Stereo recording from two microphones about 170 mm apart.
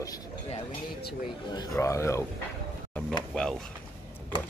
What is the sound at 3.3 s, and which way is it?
Speech, 5° left (ahead or behind).